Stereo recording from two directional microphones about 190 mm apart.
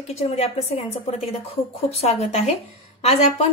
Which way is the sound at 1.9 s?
35° left (ahead or behind).